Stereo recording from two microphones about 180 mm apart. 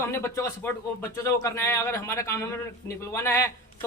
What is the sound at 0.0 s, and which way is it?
A man's voice, 15° left (ahead or behind).